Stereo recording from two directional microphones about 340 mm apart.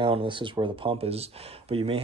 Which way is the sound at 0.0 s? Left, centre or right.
Centre.